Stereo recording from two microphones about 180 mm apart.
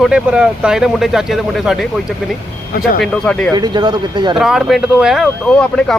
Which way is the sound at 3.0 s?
5° left (ahead or behind).